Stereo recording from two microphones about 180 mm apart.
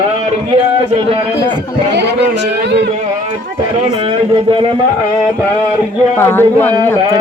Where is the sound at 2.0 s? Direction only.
70° right (ahead or behind).